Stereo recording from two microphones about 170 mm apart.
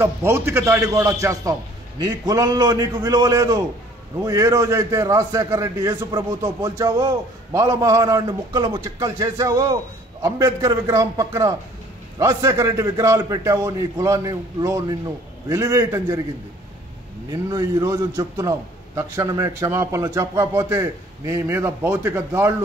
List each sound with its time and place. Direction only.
0.0 s a man's voice: 15° right (ahead or behind)
17.3 s a man's voice: 20° right (ahead or behind)